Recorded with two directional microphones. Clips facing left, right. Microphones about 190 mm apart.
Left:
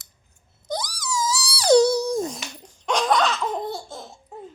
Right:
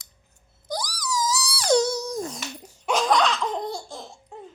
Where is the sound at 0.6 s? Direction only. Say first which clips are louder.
Left 1 dB; 20° left (ahead or behind).